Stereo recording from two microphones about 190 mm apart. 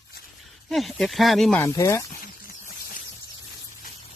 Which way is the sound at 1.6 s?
15° left (ahead or behind).